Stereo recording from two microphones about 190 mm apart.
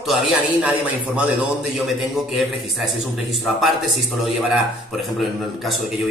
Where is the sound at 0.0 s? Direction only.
Centre (ahead or behind).